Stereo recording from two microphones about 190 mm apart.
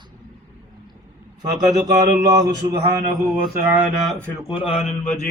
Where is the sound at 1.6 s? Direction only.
20° right (ahead or behind).